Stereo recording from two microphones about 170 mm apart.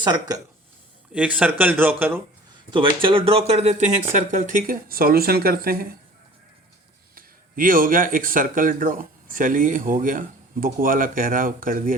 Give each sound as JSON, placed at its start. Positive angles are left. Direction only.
{"t": 1.1, "sound": "speech", "side_deg": -10}
{"t": 2.6, "sound": "speech", "side_deg": -30}
{"t": 7.2, "sound": "speech", "side_deg": -55}